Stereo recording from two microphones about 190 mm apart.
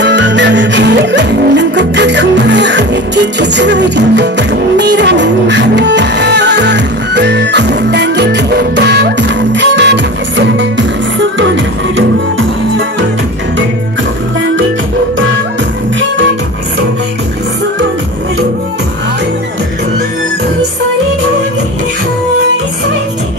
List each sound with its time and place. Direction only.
0.0 s music: 65° right (ahead or behind)